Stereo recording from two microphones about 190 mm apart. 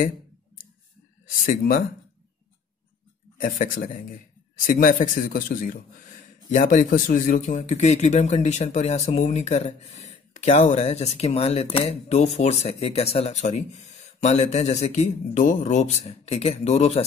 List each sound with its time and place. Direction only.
1.4 s speech: 45° left (ahead or behind)
3.3 s a man's voice: 45° left (ahead or behind)